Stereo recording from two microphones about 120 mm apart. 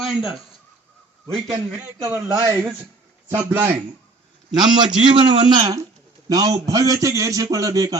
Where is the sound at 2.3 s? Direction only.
25° right (ahead or behind).